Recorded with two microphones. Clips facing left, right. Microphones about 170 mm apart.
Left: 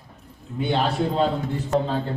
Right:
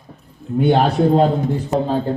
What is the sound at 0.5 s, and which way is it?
Speech, 45° right (ahead or behind).